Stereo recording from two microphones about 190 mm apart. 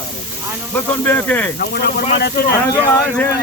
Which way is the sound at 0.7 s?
10° left (ahead or behind).